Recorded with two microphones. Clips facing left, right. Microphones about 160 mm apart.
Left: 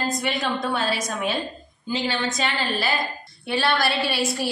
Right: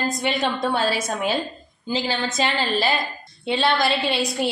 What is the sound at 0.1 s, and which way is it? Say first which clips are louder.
Speech: right 2 dB; 25° right (ahead or behind).